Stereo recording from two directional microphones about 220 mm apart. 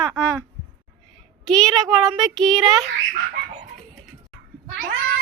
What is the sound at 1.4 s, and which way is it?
Speech, 5° left (ahead or behind).